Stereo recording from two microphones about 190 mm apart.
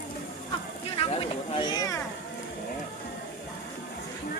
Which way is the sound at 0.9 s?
30° left (ahead or behind).